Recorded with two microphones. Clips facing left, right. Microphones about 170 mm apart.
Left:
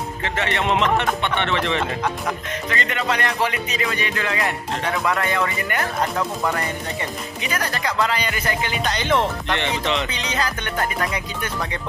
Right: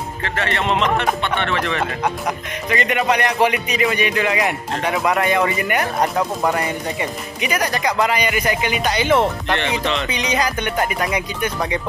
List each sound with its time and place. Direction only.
0.2 s speech: 20° left (ahead or behind)
2.7 s a man's voice: 15° right (ahead or behind)